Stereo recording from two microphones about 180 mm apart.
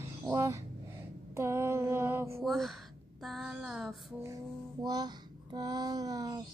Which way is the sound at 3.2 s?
Centre (ahead or behind).